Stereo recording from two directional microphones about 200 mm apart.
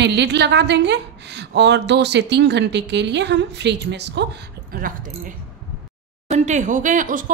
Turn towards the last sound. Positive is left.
turn(degrees=-40)  # may be behind; listen again after turning